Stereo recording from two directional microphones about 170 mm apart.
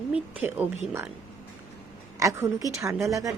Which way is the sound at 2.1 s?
20° right (ahead or behind).